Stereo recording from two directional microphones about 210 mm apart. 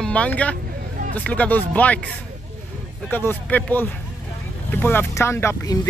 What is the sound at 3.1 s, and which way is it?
Speech, 10° left (ahead or behind).